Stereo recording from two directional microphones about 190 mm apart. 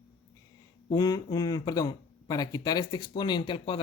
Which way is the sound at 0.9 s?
20° left (ahead or behind).